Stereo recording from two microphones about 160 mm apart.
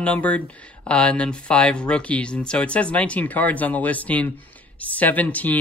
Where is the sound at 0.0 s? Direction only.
10° left (ahead or behind).